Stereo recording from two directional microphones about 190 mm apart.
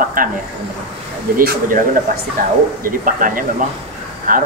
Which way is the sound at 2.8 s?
45° right (ahead or behind).